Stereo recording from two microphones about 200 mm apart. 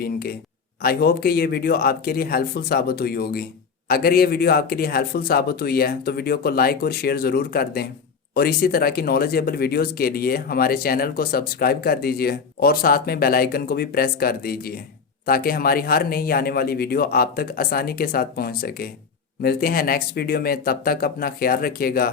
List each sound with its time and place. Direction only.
0.0 s speech: 50° left (ahead or behind)